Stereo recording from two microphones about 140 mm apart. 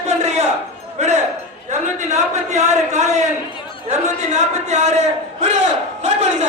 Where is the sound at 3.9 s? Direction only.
55° right (ahead or behind).